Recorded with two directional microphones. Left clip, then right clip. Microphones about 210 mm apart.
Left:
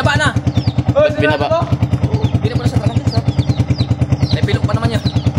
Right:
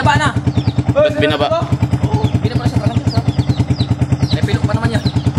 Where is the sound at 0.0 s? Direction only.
50° left (ahead or behind).